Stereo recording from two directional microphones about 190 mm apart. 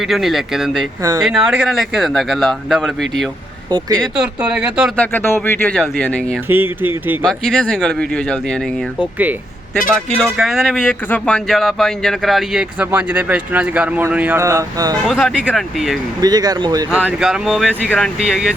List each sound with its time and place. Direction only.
0.0 s speech: centre (ahead or behind)
3.7 s speech: 25° right (ahead or behind)
3.9 s speech: centre (ahead or behind)
4.9 s speech: 10° left (ahead or behind)
6.5 s speech: 10° right (ahead or behind)
7.3 s speech: centre (ahead or behind); by 14.9 s 15° right (ahead or behind)
15.0 s speech: centre (ahead or behind)
16.2 s speech: 20° right (ahead or behind)
16.9 s speech: 5° right (ahead or behind)